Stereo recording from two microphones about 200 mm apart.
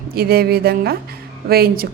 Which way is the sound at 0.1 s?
50° right (ahead or behind).